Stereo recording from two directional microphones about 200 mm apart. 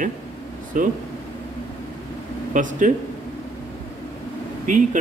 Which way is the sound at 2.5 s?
40° right (ahead or behind).